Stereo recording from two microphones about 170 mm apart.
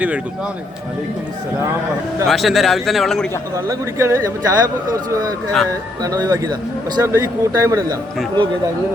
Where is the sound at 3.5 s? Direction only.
15° right (ahead or behind).